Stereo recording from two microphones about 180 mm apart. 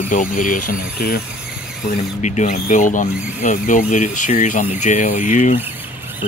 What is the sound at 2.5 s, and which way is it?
Speech, 45° left (ahead or behind).